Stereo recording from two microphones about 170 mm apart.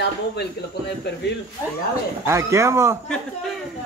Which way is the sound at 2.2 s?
15° right (ahead or behind).